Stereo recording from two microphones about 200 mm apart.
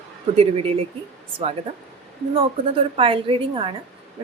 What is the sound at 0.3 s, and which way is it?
Speech, 30° right (ahead or behind).